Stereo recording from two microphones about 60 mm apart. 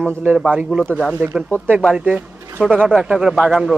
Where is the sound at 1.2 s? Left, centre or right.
Right.